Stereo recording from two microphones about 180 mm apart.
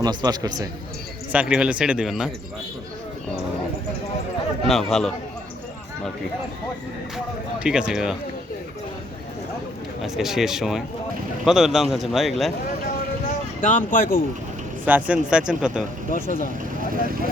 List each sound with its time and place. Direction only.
0.0 s a man's voice: 20° right (ahead or behind)
1.3 s a man's voice: 5° right (ahead or behind)
4.7 s a man's voice: centre (ahead or behind)
7.6 s a man's voice: 5° right (ahead or behind)
10.0 s a man's voice: centre (ahead or behind)
13.6 s speech: 45° left (ahead or behind)
14.8 s a man's voice: 10° right (ahead or behind)
16.1 s speech: 50° left (ahead or behind)